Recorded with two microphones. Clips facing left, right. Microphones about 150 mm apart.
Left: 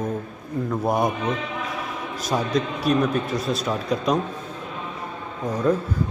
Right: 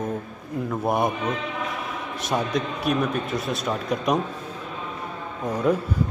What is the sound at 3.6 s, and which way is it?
Speech, 5° right (ahead or behind).